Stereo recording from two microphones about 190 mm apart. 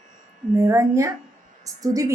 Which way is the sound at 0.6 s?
15° right (ahead or behind).